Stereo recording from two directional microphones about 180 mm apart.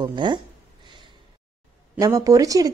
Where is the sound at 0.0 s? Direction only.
25° right (ahead or behind).